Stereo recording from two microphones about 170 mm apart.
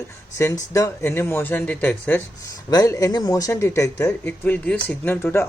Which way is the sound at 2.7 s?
20° left (ahead or behind).